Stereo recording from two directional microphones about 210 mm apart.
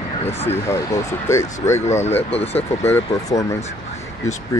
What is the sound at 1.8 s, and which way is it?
Speech, 35° left (ahead or behind).